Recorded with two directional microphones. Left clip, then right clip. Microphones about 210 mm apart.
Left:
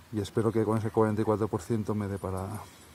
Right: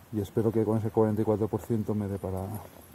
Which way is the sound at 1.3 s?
10° left (ahead or behind).